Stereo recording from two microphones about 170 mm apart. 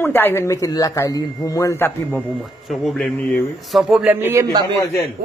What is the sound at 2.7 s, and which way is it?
Speech, centre (ahead or behind).